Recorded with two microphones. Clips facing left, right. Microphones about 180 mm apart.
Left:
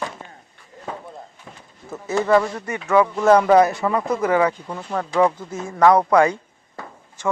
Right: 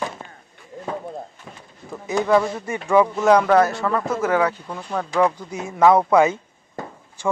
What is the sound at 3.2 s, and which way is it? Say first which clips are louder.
Speech: left 4 dB; 5° left (ahead or behind).